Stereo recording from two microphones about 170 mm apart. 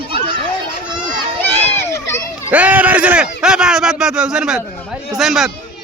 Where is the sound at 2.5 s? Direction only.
10° right (ahead or behind).